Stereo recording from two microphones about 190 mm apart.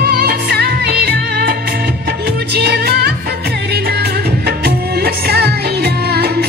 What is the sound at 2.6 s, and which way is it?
Music of bollywood, 55° right (ahead or behind).